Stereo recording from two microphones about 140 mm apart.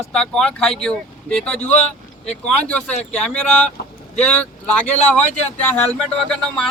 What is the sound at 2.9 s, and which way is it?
Speech, 55° left (ahead or behind).